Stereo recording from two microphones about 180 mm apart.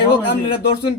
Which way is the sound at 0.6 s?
65° left (ahead or behind).